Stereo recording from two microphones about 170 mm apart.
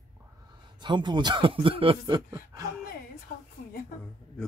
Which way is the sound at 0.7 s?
25° right (ahead or behind).